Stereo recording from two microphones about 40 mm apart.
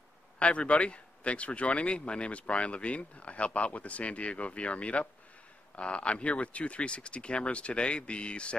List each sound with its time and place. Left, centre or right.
0.4 s speech: left